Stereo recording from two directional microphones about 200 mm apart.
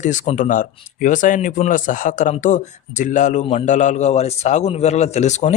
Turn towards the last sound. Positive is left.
turn(degrees=35)  # may be behind; listen again after turning